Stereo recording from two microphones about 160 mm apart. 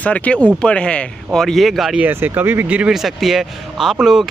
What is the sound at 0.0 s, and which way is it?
Speech, 10° left (ahead or behind).